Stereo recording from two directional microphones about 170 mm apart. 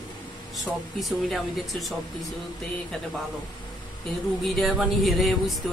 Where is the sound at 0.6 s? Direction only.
Centre (ahead or behind).